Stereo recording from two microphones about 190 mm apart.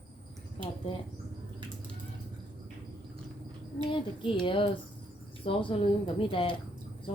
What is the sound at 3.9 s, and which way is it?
Speech, 25° left (ahead or behind).